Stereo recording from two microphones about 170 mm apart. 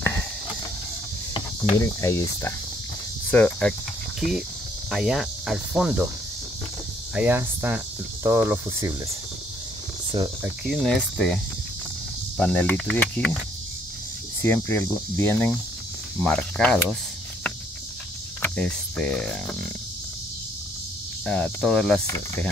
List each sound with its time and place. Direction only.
1.6 s speech: 15° left (ahead or behind); by 4.5 s centre (ahead or behind)
4.9 s cricket: centre (ahead or behind)
7.2 s cricket: 10° right (ahead or behind)
10.6 s cricket: centre (ahead or behind)
12.4 s speech: 5° left (ahead or behind)
14.4 s speech: 15° left (ahead or behind)
16.2 s cricket: 5° left (ahead or behind)
18.4 s speech: 5° left (ahead or behind)
21.3 s cricket: 5° left (ahead or behind)
22.0 s speech: 20° left (ahead or behind)